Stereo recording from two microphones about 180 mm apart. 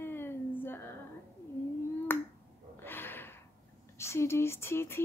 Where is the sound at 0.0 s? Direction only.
10° left (ahead or behind).